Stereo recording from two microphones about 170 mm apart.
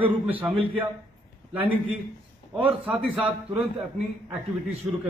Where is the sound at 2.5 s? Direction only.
5° right (ahead or behind).